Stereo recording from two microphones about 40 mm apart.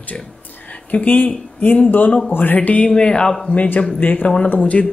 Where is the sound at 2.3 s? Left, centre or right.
Left.